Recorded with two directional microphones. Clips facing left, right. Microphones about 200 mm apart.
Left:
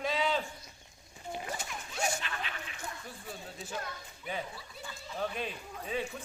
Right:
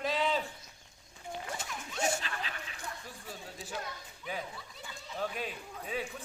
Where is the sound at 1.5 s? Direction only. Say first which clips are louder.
Even; 25° right (ahead or behind).